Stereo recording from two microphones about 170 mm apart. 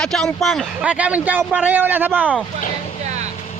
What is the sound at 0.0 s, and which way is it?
Speech, 5° left (ahead or behind).